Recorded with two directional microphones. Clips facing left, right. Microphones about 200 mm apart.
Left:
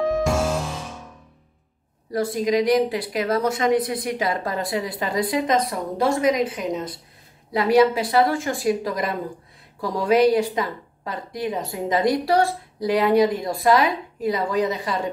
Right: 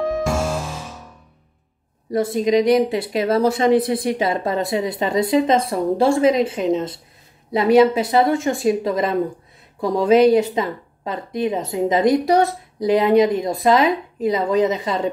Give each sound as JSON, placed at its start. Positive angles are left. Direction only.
{"t": 0.0, "sound": "music", "side_deg": 0}
{"t": 2.1, "sound": "a woman's voice", "side_deg": -25}